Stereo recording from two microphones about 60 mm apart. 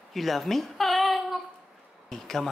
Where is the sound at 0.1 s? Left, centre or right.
Centre.